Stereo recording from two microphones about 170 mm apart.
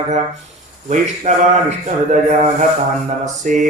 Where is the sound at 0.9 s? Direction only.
45° right (ahead or behind).